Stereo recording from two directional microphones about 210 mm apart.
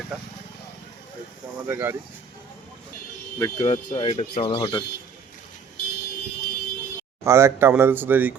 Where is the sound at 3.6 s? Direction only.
35° left (ahead or behind).